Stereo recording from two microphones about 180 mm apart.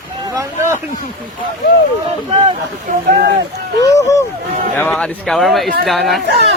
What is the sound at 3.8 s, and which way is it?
Speech, 20° left (ahead or behind).